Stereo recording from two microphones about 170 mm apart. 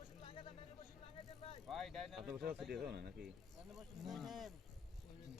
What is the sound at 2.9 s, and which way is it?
Speech, 75° right (ahead or behind).